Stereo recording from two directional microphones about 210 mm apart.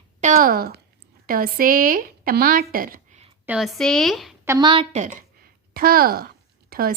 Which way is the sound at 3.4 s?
Centre (ahead or behind).